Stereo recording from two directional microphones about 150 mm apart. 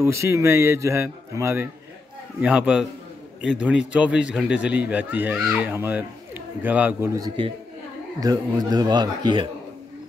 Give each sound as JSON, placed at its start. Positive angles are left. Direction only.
{"t": 0.0, "sound": "a man's voice", "side_deg": -20}
{"t": 7.2, "sound": "a man's voice", "side_deg": -30}